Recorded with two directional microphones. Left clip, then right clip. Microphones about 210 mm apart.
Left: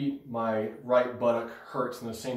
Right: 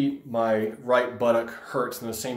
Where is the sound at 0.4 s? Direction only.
50° right (ahead or behind).